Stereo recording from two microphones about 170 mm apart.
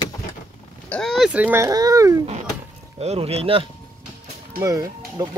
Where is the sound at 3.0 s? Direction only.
35° right (ahead or behind).